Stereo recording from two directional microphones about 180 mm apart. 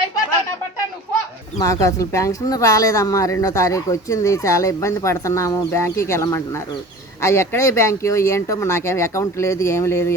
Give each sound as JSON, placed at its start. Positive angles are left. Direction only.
{"t": 1.5, "sound": "a woman's voice", "side_deg": 20}